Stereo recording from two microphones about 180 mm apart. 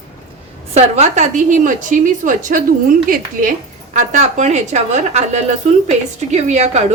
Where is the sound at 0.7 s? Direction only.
35° right (ahead or behind).